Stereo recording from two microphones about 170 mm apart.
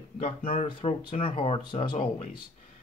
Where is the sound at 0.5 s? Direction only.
30° left (ahead or behind).